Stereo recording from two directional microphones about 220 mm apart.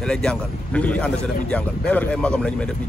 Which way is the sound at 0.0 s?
5° left (ahead or behind).